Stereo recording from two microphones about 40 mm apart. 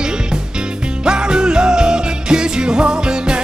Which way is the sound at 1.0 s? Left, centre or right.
Right.